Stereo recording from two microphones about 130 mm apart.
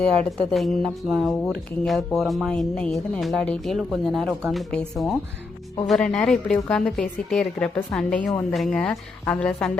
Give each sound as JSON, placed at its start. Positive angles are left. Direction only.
{"t": 0.0, "sound": "speech", "side_deg": 0}